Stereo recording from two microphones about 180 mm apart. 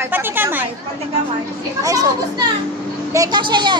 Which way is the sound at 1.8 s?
20° right (ahead or behind).